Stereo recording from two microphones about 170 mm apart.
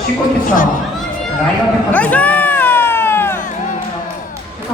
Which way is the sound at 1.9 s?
10° left (ahead or behind).